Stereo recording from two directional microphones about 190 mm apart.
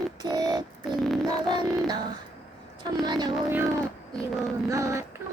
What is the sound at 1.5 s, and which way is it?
Music, 20° right (ahead or behind).